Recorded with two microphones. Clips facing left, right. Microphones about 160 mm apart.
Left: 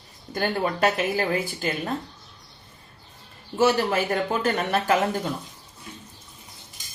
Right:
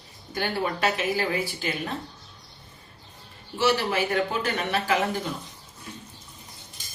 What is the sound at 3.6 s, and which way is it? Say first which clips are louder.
A woman's voice: left 3 dB; 45° left (ahead or behind).